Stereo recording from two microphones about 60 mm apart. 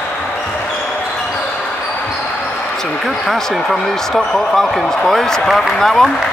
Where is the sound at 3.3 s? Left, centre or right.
Centre.